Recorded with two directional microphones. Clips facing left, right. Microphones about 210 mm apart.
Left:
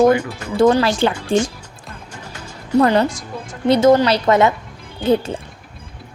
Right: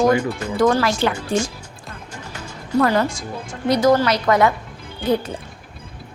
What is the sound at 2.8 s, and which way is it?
A woman's voice, 20° left (ahead or behind).